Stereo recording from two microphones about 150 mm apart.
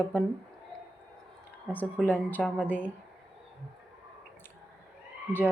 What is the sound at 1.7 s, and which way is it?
Speech, 10° left (ahead or behind).